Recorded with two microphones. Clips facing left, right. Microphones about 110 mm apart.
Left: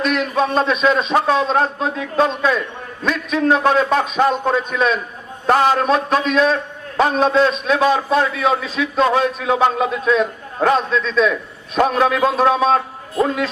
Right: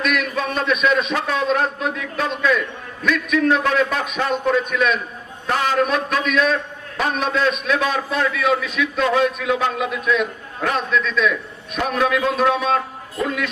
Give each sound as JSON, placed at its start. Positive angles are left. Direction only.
{"t": 0.0, "sound": "a man's voice", "side_deg": 30}